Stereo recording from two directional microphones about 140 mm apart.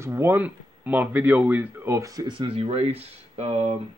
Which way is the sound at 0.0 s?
20° right (ahead or behind).